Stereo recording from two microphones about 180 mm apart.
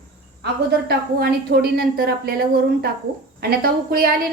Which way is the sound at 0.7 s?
60° right (ahead or behind).